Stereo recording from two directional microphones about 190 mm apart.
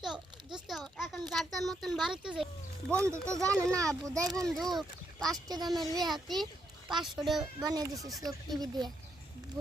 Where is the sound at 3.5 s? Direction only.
5° left (ahead or behind).